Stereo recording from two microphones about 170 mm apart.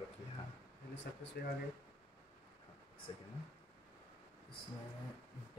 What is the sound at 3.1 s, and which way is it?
Speech, 30° left (ahead or behind).